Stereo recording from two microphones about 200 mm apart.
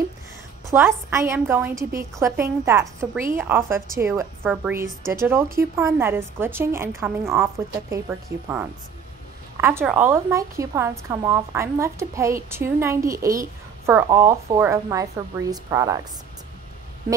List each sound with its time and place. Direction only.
0.7 s a woman's voice: 15° right (ahead or behind)